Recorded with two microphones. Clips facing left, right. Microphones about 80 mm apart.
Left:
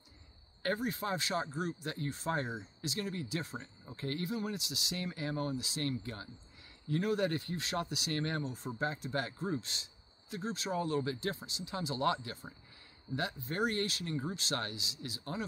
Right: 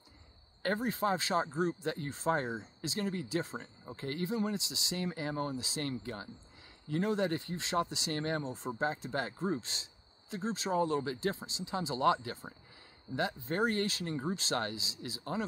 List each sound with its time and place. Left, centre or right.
0.6 s speech: right